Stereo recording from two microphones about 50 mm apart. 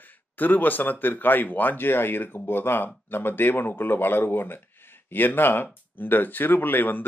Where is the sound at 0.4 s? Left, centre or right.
Left.